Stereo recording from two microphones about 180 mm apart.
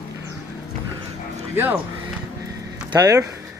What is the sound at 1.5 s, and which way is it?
Speech, 10° right (ahead or behind).